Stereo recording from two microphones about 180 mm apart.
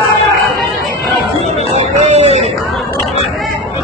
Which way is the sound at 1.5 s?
40° right (ahead or behind).